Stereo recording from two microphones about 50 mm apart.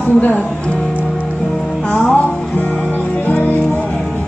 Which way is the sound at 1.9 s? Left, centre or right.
Left.